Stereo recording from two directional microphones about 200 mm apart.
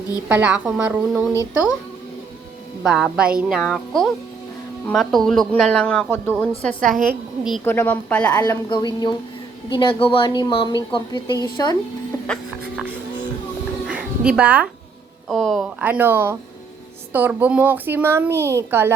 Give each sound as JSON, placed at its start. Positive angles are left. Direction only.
{"t": 0.3, "sound": "speech", "side_deg": -5}
{"t": 1.3, "sound": "a woman's voice", "side_deg": 15}
{"t": 2.8, "sound": "a woman's voice", "side_deg": 0}
{"t": 8.4, "sound": "a woman's voice", "side_deg": 20}
{"t": 12.3, "sound": "a sound", "side_deg": -5}
{"t": 13.8, "sound": "music", "side_deg": -5}
{"t": 15.3, "sound": "speech", "side_deg": 5}
{"t": 15.8, "sound": "speech", "side_deg": -10}